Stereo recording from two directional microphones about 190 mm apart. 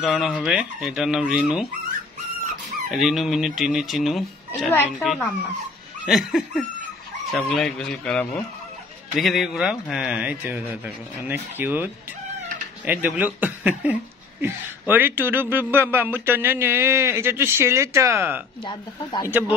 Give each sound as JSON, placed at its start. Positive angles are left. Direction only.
{"t": 0.0, "sound": "a man's voice", "side_deg": 0}
{"t": 2.9, "sound": "a man's voice", "side_deg": 0}
{"t": 18.6, "sound": "speech", "side_deg": 25}